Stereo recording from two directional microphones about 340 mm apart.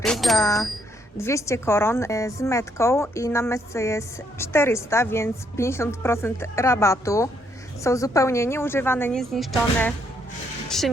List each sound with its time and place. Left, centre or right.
0.0 s a woman's voice: centre